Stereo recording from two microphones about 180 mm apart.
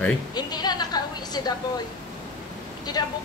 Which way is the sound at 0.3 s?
25° left (ahead or behind).